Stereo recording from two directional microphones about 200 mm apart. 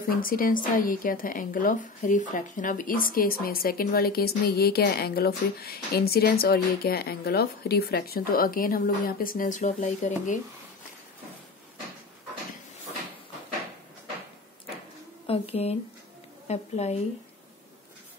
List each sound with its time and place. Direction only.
0.2 s a woman's voice: 45° left (ahead or behind)
15.2 s a woman's voice: 30° left (ahead or behind)